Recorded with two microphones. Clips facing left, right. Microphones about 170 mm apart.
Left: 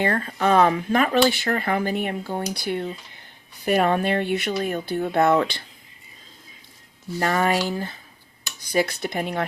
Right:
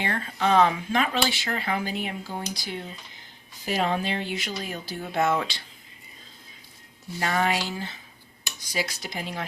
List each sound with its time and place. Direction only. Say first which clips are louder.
0.0 s speech: left 5 dB; 45° left (ahead or behind)
7.2 s speech: left 4 dB; 45° left (ahead or behind)